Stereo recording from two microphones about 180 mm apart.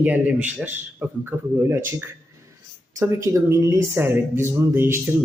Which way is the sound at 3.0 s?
15° right (ahead or behind).